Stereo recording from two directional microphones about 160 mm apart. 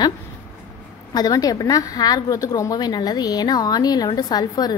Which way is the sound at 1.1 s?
25° left (ahead or behind).